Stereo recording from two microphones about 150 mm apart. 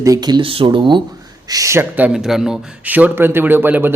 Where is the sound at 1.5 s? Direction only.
20° right (ahead or behind).